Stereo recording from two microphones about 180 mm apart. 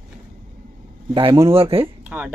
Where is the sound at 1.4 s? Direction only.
30° right (ahead or behind).